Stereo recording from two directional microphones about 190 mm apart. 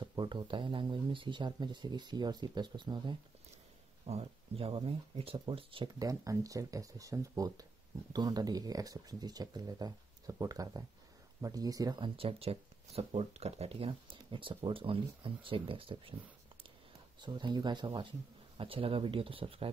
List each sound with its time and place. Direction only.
0.0 s speech: 25° right (ahead or behind)
17.2 s speech: 25° right (ahead or behind)